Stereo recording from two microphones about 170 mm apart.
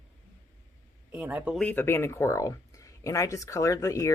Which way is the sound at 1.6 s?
10° left (ahead or behind).